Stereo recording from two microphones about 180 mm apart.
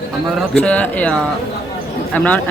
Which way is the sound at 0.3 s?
5° left (ahead or behind).